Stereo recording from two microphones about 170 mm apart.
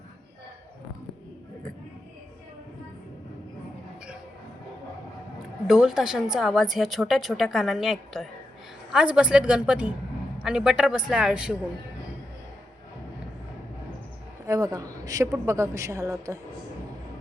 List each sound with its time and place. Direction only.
5.6 s a woman's voice: 5° right (ahead or behind)
14.4 s a woman's voice: 20° right (ahead or behind)